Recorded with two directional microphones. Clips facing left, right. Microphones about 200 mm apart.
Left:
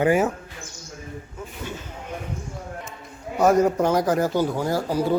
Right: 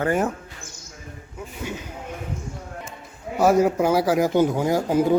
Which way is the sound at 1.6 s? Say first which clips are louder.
Right 3 dB; 15° right (ahead or behind).